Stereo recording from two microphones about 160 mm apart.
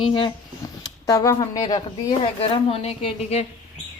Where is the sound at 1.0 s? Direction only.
20° left (ahead or behind).